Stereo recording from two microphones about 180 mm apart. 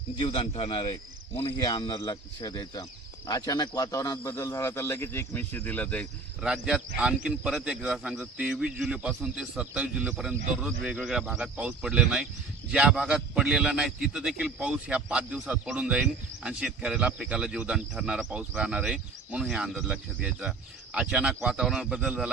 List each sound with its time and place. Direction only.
0.2 s speech: 35° left (ahead or behind); by 6.1 s 10° left (ahead or behind)
6.4 s a man's voice: 5° right (ahead or behind)